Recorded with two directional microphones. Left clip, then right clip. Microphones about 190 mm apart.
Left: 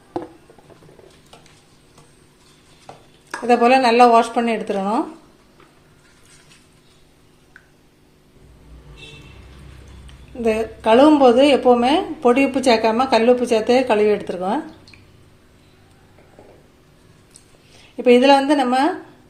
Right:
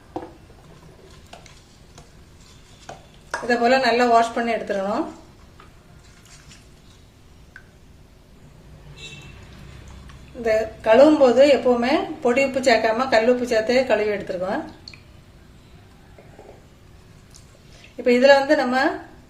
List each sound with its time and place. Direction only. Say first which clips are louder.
3.4 s a woman's voice: left 4 dB; 35° left (ahead or behind)
10.4 s a woman's voice: left 1 dB; 35° left (ahead or behind)
18.0 s a woman's voice: left 2 dB; 35° left (ahead or behind)